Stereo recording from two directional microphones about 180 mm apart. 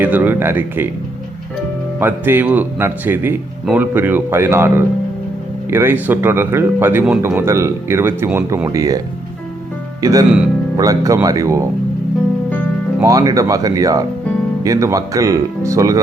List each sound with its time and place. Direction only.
0.0 s speech: 10° right (ahead or behind)
2.0 s speech: 10° right (ahead or behind)
10.0 s speech: 20° right (ahead or behind)
13.0 s speech: 20° right (ahead or behind)